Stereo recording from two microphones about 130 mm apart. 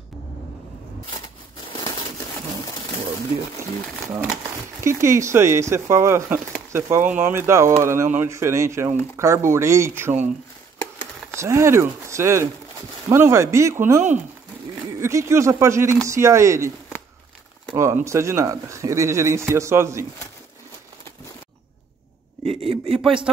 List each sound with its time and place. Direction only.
1.7 s crumpling: 30° left (ahead or behind)
4.8 s speech: 20° right (ahead or behind)
11.3 s speech: 20° right (ahead or behind)
17.7 s speech: 20° right (ahead or behind)
22.4 s a sound: 50° right (ahead or behind)
23.0 s speech: 5° right (ahead or behind)